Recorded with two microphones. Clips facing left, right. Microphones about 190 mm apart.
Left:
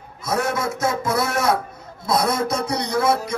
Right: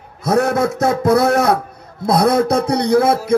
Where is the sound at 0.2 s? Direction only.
60° right (ahead or behind).